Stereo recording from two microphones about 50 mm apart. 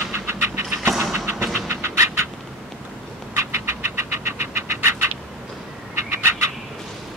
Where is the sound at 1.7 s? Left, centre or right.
Right.